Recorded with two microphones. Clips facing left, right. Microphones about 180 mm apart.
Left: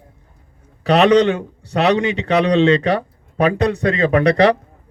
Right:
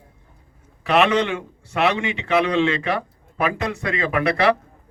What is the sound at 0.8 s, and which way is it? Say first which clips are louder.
A man's voice: left 6 dB; 35° left (ahead or behind).